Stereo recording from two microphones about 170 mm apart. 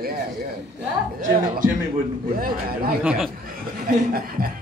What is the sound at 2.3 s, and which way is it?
Speech, 60° right (ahead or behind).